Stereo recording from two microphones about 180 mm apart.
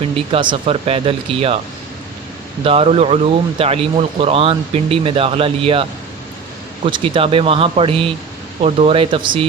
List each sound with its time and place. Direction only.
0.0 s speech: 30° right (ahead or behind)
2.6 s speech: 35° right (ahead or behind)
6.8 s speech: 30° right (ahead or behind)